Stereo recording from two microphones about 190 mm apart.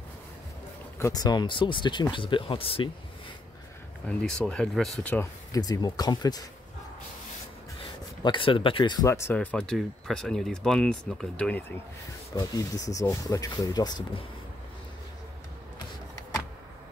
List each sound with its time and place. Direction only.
0.9 s speech: 15° left (ahead or behind)
4.2 s speech: 5° left (ahead or behind)
5.5 s speech: 20° left (ahead or behind)
7.8 s speech: 25° left (ahead or behind); by 11.6 s 5° left (ahead or behind)
12.4 s speech: 20° left (ahead or behind)